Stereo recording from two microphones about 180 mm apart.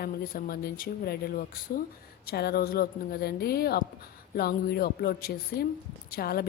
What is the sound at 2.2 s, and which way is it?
Speech, 65° left (ahead or behind).